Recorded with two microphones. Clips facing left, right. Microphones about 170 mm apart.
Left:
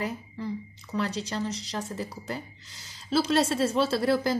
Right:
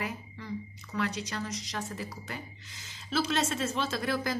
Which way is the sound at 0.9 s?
30° left (ahead or behind).